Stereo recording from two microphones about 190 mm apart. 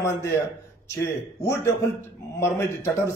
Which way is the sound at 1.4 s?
15° left (ahead or behind).